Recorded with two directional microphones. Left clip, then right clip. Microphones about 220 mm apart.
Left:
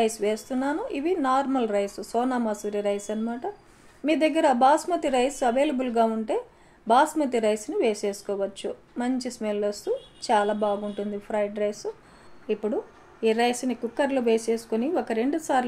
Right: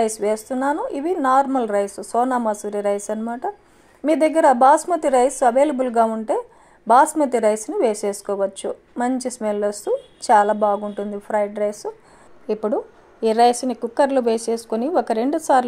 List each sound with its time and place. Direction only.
0.0 s speech: 25° right (ahead or behind)
13.4 s speech: 30° right (ahead or behind)